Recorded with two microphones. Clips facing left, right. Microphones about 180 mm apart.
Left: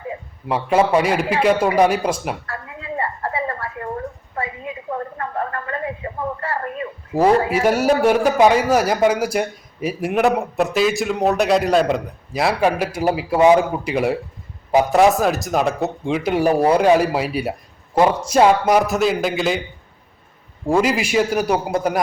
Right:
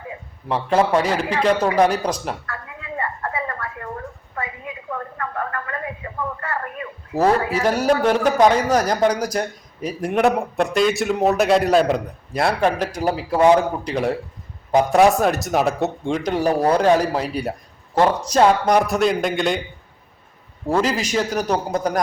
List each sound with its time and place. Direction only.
0.4 s a man's voice: 10° left (ahead or behind)
2.5 s a sound: 30° left (ahead or behind)
7.1 s a man's voice: 10° left (ahead or behind)
20.7 s a man's voice: 10° left (ahead or behind)